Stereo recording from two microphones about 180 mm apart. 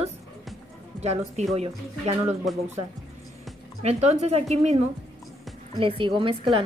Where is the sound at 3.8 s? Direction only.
35° right (ahead or behind).